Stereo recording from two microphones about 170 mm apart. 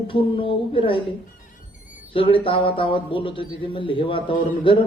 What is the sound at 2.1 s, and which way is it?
Speech, 30° left (ahead or behind).